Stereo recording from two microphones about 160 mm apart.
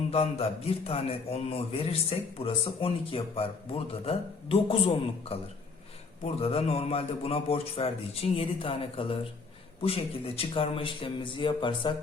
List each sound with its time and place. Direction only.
0.1 s a man's voice: 40° left (ahead or behind)